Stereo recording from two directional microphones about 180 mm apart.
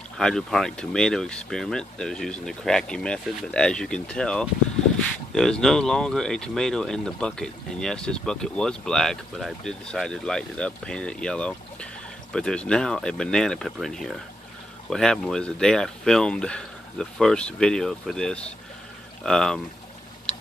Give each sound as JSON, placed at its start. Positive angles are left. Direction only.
{"t": 0.2, "sound": "speech", "side_deg": 5}